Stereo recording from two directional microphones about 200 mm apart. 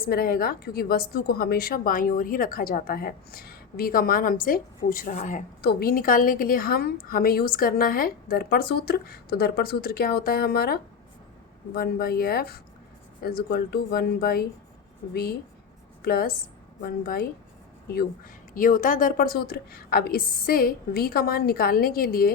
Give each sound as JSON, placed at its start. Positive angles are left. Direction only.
{"t": 0.0, "sound": "a woman's voice", "side_deg": 50}
{"t": 5.6, "sound": "a woman's voice", "side_deg": 50}
{"t": 18.5, "sound": "a woman's voice", "side_deg": 45}